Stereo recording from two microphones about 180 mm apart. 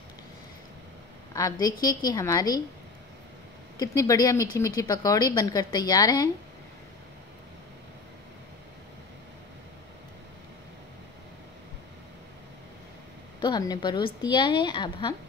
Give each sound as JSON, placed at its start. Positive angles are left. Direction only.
{"t": 1.3, "sound": "speech", "side_deg": 20}
{"t": 3.7, "sound": "speech", "side_deg": 20}
{"t": 13.4, "sound": "speech", "side_deg": 20}